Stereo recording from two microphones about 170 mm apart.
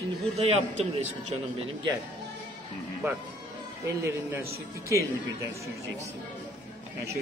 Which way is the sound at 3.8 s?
15° right (ahead or behind).